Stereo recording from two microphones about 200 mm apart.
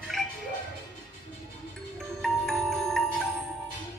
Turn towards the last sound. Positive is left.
turn(degrees=0)  # may be behind; listen again after turning